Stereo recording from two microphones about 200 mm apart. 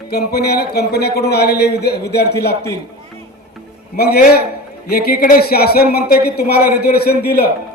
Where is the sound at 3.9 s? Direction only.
50° left (ahead or behind).